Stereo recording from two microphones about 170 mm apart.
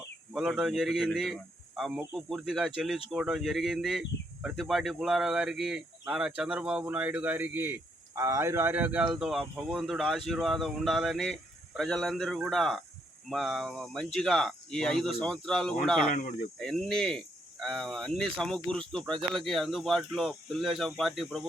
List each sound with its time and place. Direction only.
0.3 s speech: 5° right (ahead or behind)